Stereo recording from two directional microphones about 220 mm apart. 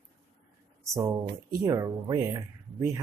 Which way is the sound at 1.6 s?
15° right (ahead or behind).